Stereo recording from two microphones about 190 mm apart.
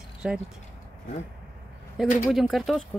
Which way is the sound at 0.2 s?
5° right (ahead or behind).